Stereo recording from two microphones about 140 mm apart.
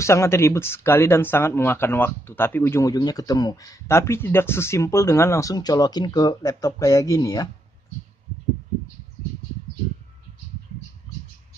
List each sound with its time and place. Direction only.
0.0 s speech: 20° left (ahead or behind)